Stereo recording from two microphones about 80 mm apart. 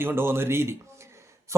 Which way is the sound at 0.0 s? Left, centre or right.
Right.